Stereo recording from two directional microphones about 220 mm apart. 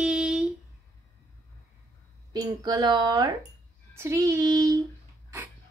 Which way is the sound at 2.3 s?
15° right (ahead or behind).